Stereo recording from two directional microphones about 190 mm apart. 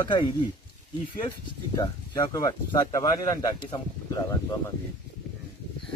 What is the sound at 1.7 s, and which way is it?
Speech, 20° left (ahead or behind).